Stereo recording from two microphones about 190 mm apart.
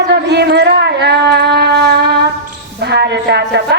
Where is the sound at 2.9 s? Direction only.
60° right (ahead or behind).